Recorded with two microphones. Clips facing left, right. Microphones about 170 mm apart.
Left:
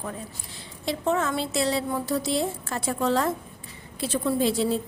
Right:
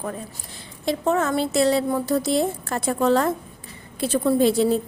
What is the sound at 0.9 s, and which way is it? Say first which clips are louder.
A woman's voice: right 4 dB; 50° right (ahead or behind).